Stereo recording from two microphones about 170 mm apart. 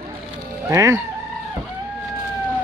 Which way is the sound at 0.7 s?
20° right (ahead or behind).